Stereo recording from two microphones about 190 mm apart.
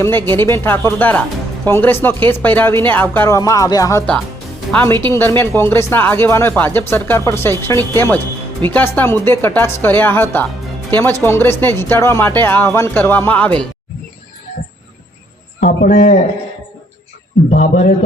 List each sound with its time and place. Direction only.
0.0 s speech: 10° left (ahead or behind)
15.6 s a man's voice: 40° left (ahead or behind)
17.5 s a man's voice: 40° left (ahead or behind)